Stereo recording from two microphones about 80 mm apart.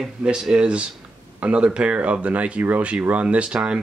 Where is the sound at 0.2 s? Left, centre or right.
Centre.